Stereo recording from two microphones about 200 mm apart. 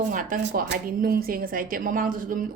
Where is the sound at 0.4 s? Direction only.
50° right (ahead or behind).